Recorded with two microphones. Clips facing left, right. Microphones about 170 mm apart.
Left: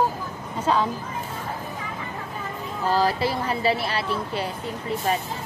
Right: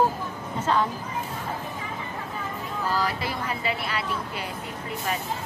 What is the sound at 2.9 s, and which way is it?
Speech, 30° left (ahead or behind).